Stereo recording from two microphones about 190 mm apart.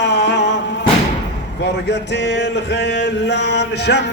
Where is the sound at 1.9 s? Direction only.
65° left (ahead or behind).